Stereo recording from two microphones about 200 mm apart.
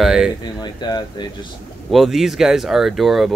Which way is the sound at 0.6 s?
20° left (ahead or behind).